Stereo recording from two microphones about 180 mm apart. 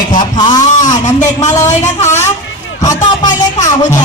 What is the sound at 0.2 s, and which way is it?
Speech, 25° left (ahead or behind).